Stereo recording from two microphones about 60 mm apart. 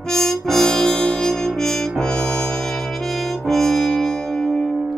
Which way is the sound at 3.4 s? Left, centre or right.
Centre.